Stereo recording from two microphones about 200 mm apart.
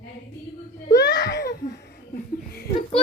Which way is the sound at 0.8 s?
60° left (ahead or behind).